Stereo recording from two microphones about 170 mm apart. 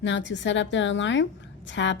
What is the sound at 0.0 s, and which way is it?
A woman's voice, 90° left.